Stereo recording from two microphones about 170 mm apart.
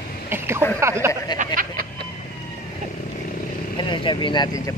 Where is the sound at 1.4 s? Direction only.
55° right (ahead or behind).